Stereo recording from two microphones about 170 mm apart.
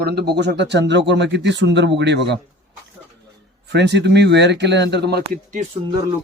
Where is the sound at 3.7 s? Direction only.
90° right; by 5.4 s 70° right (ahead or behind).